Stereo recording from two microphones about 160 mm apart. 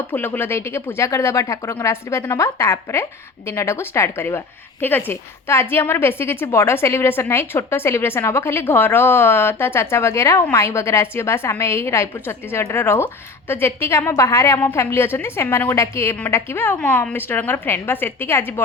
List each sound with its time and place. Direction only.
0.1 s speech: 15° left (ahead or behind)